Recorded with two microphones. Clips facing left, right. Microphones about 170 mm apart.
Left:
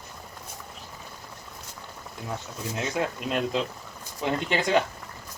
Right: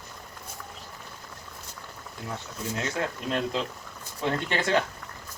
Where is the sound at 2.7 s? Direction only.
15° left (ahead or behind).